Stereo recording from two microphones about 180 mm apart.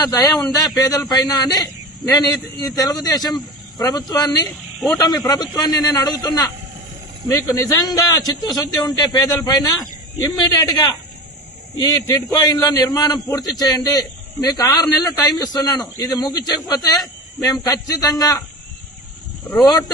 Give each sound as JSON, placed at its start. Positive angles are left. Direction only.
{"t": 0.0, "sound": "a man's voice", "side_deg": 20}
{"t": 4.4, "sound": "speech", "side_deg": 0}
{"t": 4.9, "sound": "a man's voice", "side_deg": 20}